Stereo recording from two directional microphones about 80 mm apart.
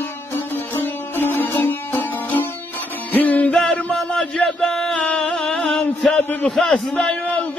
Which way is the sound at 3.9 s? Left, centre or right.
Centre.